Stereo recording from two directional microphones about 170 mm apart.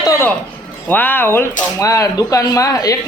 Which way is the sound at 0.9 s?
10° left (ahead or behind).